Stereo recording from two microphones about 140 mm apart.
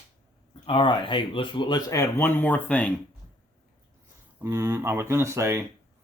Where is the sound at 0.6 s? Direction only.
40° left (ahead or behind); by 2.9 s 10° left (ahead or behind).